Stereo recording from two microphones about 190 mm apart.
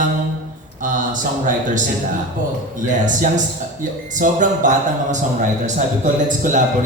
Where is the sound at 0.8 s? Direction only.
45° right (ahead or behind).